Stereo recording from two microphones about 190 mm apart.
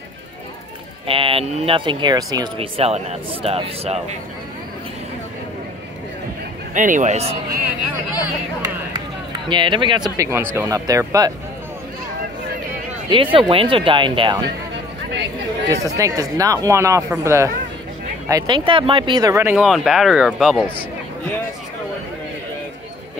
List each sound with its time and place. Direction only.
1.0 s speech: 30° right (ahead or behind)
6.7 s a man's voice: 40° right (ahead or behind)
9.5 s speech: 25° right (ahead or behind)
10.1 s speech: 15° right (ahead or behind)
13.1 s speech: 25° right (ahead or behind)
15.7 s speech: 15° right (ahead or behind)
18.3 s speech: 25° right (ahead or behind)
19.6 s speech: centre (ahead or behind)